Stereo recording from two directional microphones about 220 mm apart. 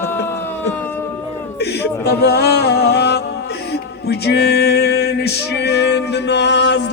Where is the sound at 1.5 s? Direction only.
50° left (ahead or behind).